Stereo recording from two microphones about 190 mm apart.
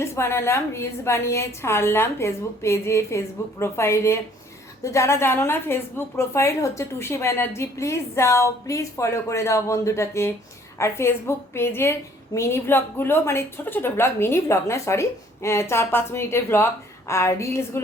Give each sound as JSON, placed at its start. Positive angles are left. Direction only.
{"t": 0.0, "sound": "a woman's voice", "side_deg": 15}